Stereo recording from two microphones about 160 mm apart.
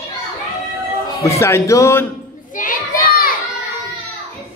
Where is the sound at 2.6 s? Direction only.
65° left (ahead or behind).